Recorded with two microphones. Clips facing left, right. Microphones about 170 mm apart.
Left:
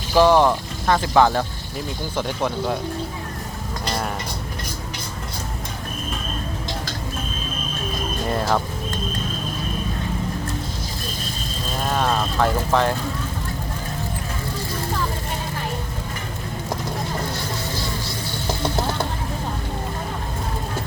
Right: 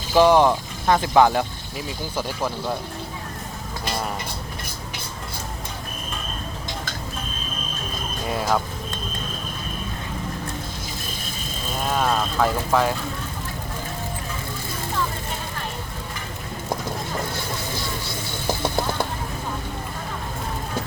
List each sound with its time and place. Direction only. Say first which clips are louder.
0.1 s speech: even; 15° right (ahead or behind)
2.1 s speech: left 3 dB; 5° right (ahead or behind)
8.3 s speech: left 1 dB; 5° right (ahead or behind)
11.9 s speech: even; centre (ahead or behind)